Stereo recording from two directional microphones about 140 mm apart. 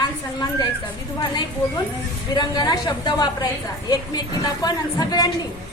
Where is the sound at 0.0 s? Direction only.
30° left (ahead or behind).